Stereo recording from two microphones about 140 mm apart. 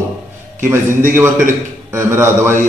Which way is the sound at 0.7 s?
20° right (ahead or behind).